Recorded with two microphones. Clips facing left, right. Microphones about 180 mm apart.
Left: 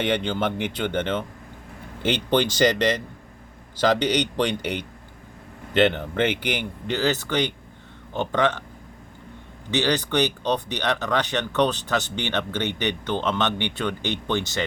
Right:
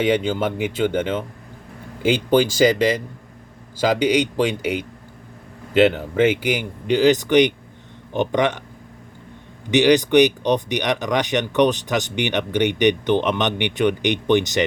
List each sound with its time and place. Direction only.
0.0 s speech: 10° right (ahead or behind)
9.7 s speech: 15° right (ahead or behind)